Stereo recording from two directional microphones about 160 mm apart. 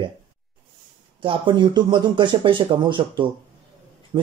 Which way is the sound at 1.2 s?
30° right (ahead or behind).